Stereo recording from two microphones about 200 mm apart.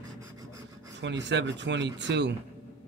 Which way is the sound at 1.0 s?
65° right (ahead or behind).